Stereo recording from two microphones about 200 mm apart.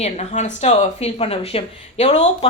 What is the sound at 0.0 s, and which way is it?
A woman's voice, 35° left (ahead or behind).